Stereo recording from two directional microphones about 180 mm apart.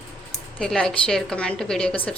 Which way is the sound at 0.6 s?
5° left (ahead or behind).